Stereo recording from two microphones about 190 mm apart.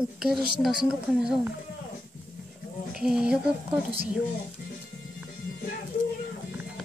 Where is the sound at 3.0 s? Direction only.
5° right (ahead or behind).